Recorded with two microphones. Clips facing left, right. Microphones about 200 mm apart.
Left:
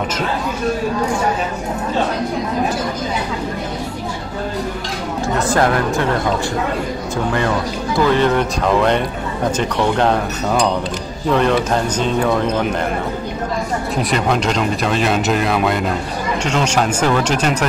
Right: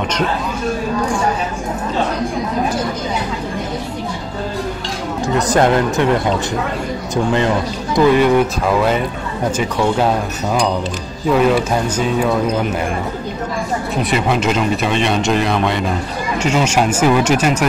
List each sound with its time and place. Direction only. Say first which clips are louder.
5.5 s speech: right 3 dB; 20° right (ahead or behind)
8.1 s speech: right 3 dB; 10° right (ahead or behind)
14.1 s speech: right 1 dB; 5° right (ahead or behind)